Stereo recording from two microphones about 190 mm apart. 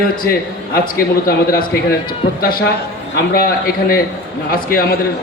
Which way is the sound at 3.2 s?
50° left (ahead or behind).